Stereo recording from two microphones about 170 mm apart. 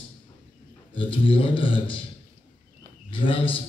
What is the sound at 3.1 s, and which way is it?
Speech, 30° left (ahead or behind).